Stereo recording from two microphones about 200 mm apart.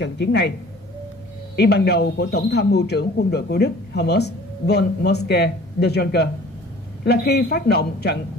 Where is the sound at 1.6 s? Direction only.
55° left (ahead or behind).